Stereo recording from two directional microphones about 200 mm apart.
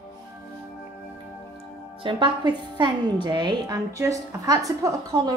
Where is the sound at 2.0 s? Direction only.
25° right (ahead or behind).